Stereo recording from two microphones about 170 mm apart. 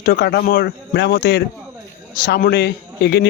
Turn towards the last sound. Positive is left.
turn(degrees=75)  # may be behind; listen again after turning